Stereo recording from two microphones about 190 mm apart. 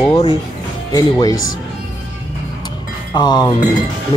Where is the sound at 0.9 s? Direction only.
20° left (ahead or behind).